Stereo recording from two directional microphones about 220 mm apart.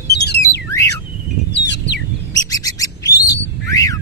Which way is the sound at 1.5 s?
50° left (ahead or behind).